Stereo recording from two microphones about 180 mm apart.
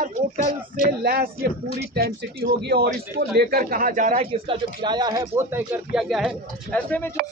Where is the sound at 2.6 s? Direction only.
65° right (ahead or behind); by 4.2 s 45° right (ahead or behind).